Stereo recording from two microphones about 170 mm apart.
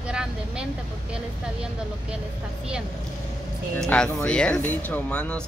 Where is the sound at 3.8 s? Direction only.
5° left (ahead or behind).